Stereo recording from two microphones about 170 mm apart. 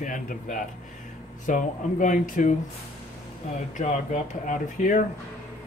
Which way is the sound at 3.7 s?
45° left (ahead or behind).